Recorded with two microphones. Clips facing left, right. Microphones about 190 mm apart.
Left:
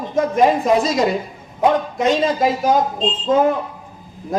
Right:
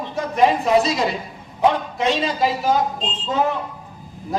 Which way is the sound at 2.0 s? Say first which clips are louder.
Left 3 dB; 45° left (ahead or behind).